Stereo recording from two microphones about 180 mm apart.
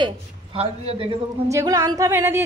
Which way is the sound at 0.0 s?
35° right (ahead or behind).